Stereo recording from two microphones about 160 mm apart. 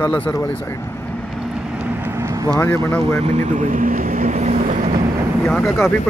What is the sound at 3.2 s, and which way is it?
Speech, 45° right (ahead or behind).